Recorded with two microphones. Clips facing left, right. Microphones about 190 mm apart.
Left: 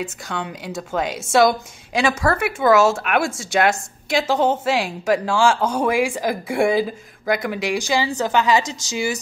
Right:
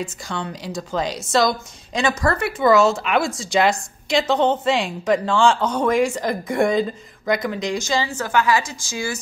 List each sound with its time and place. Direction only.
0.0 s a woman's voice: 5° left (ahead or behind)